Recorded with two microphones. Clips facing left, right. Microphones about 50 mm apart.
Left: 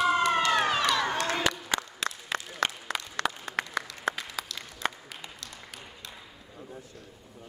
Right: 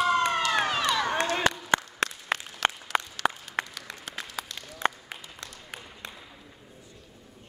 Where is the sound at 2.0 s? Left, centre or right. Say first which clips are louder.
Right 4 dB; right.